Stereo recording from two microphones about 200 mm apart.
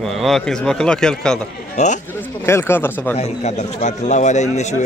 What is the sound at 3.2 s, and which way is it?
Speech, 35° left (ahead or behind).